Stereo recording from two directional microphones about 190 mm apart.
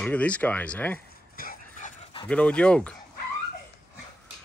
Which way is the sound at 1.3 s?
50° left (ahead or behind).